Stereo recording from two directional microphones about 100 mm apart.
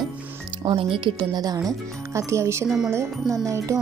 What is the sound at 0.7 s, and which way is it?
Speech, 60° right (ahead or behind).